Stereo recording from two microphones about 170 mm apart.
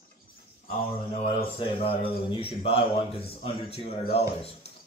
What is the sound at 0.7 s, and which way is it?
A man's voice, 35° left (ahead or behind).